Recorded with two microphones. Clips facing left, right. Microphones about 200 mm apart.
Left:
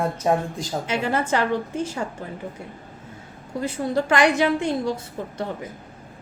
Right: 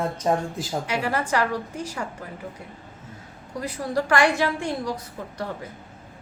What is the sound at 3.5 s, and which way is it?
A woman's voice, 25° left (ahead or behind).